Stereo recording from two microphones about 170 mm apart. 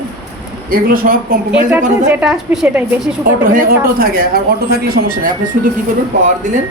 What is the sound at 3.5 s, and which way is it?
Speech, 55° right (ahead or behind).